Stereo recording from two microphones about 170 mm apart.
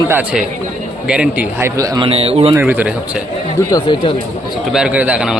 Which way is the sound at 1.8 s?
20° right (ahead or behind).